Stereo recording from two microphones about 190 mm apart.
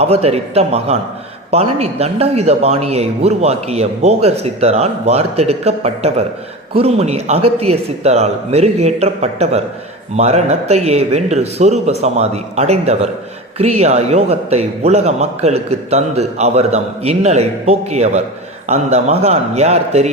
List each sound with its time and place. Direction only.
0.0 s a man's voice: 35° right (ahead or behind)